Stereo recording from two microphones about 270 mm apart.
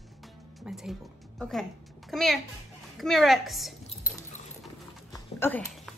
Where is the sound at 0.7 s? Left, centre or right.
Centre.